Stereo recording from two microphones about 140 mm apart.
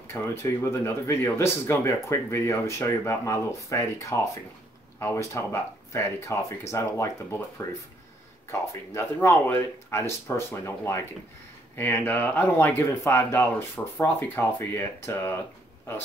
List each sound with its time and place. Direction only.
0.1 s speech: 20° left (ahead or behind)
8.5 s speech: 15° left (ahead or behind)